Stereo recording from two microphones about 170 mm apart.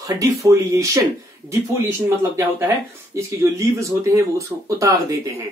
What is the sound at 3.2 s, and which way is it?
Speech, 15° right (ahead or behind).